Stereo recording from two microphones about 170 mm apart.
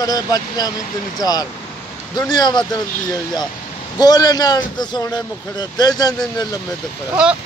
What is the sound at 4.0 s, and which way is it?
A man's voice, 25° left (ahead or behind).